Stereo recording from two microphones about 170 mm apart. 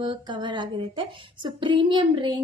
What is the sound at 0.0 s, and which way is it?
Female singing, 25° right (ahead or behind).